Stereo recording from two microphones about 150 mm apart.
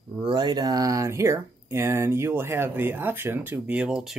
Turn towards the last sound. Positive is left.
turn(degrees=-5)  # may be behind; listen again after turning